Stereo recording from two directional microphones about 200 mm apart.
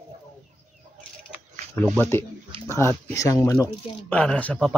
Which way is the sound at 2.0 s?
10° left (ahead or behind).